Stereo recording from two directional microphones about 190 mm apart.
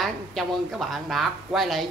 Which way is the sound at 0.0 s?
Centre (ahead or behind).